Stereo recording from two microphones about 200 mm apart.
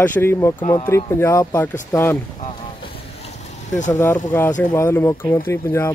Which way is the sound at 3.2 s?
35° left (ahead or behind).